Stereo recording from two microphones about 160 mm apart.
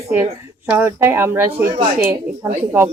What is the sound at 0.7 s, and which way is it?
A woman's voice, 15° right (ahead or behind).